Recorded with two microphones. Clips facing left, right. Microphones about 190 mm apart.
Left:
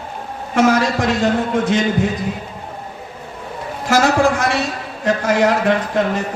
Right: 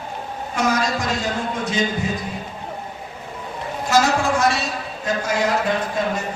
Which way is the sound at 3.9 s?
60° left (ahead or behind).